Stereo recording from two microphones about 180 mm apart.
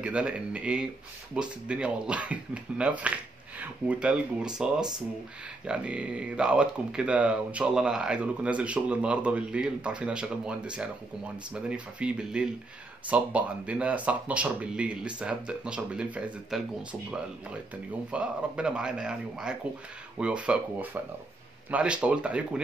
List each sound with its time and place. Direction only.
0.0 s speech: 5° right (ahead or behind)
18.1 s speech: 5° right (ahead or behind)